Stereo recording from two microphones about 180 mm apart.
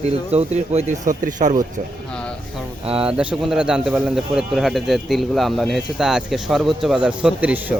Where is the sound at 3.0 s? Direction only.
5° right (ahead or behind).